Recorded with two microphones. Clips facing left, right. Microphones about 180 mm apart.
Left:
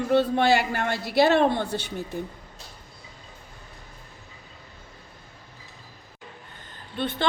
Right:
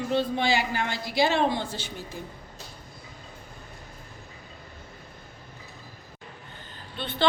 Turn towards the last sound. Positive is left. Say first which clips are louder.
# even
turn(degrees=50)  # may be behind; listen again after turning